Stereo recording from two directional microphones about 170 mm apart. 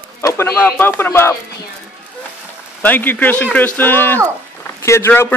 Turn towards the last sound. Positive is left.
turn(degrees=15)  # may be behind; listen again after turning